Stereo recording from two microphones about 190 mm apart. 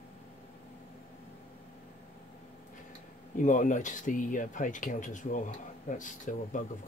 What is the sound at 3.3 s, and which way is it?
Speech, 40° left (ahead or behind).